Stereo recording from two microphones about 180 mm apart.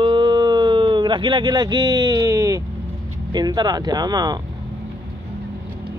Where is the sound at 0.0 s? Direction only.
25° right (ahead or behind).